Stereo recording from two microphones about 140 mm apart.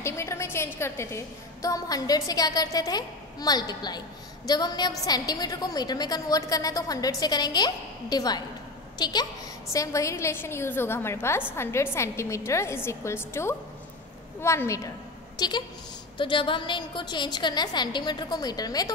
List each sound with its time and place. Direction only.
0.0 s a woman's voice: 20° left (ahead or behind)
15.3 s a woman's voice: 30° left (ahead or behind)